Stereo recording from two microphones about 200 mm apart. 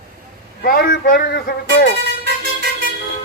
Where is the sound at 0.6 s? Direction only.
45° left (ahead or behind).